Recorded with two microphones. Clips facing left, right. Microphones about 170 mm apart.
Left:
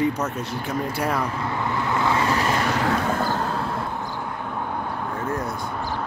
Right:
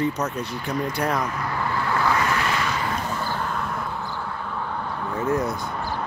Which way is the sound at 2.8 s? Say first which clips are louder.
Left 5 dB; 75° left (ahead or behind).